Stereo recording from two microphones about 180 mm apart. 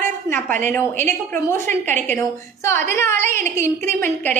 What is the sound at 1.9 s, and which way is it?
Speech, 40° right (ahead or behind).